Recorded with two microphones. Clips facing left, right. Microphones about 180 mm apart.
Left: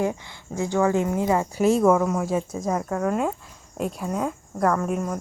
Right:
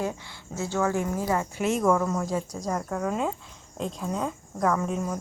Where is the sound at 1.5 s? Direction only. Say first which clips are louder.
Left 9 dB; 35° left (ahead or behind).